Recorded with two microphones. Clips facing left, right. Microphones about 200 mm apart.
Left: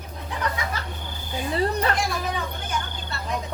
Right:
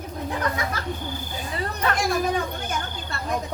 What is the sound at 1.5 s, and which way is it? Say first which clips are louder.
Speech: left 3 dB; 30° left (ahead or behind).